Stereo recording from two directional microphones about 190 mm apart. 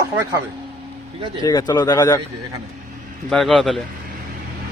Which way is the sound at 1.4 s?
20° left (ahead or behind).